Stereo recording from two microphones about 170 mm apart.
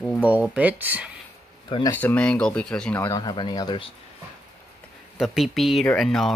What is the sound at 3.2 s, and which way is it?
Speech, 25° left (ahead or behind).